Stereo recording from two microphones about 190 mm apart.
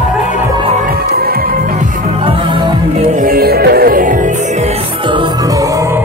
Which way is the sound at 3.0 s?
50° right (ahead or behind).